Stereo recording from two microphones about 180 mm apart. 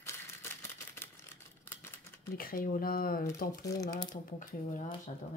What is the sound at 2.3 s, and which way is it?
Speech, 55° left (ahead or behind).